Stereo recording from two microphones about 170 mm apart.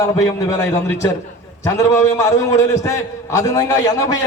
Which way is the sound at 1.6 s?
15° left (ahead or behind).